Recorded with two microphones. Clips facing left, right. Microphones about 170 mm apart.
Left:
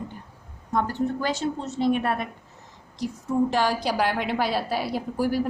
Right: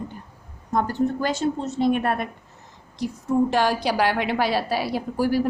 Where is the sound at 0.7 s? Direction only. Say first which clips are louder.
Right 2 dB; 45° right (ahead or behind).